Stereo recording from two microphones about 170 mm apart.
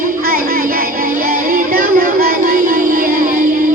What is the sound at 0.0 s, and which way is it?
Music, 55° right (ahead or behind).